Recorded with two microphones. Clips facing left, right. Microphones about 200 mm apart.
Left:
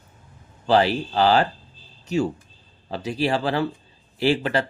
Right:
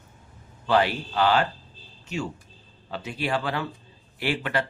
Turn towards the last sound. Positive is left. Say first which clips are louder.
# left 6 dB
turn(degrees=30)  # may be behind; listen again after turning